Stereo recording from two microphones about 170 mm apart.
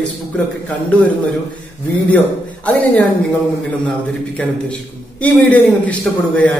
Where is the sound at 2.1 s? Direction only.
10° left (ahead or behind).